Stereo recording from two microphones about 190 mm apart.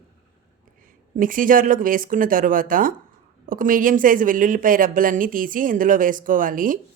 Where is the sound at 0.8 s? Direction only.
45° right (ahead or behind).